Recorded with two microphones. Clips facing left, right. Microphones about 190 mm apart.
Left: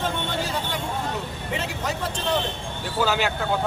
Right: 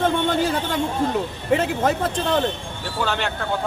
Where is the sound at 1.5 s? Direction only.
55° right (ahead or behind).